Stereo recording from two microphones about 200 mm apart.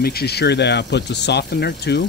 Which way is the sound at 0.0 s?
50° left (ahead or behind).